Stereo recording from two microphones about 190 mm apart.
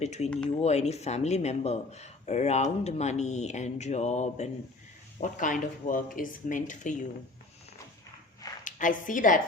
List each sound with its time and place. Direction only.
0.0 s speech: 35° left (ahead or behind)
0.3 s speech: 5° left (ahead or behind)
0.6 s speech: 35° left (ahead or behind)
8.6 s speech: 45° left (ahead or behind)